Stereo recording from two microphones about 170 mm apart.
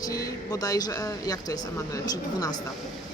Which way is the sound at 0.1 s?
20° left (ahead or behind).